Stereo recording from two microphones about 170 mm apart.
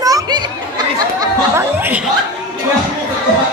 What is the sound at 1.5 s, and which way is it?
Music, 15° right (ahead or behind).